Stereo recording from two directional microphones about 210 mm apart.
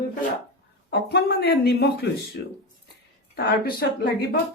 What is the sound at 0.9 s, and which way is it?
Speech, 50° left (ahead or behind).